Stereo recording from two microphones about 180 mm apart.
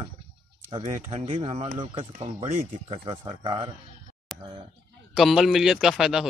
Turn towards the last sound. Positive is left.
turn(degrees=0)  # may be behind; listen again after turning